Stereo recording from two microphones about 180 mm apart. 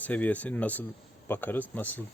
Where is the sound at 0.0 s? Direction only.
10° left (ahead or behind).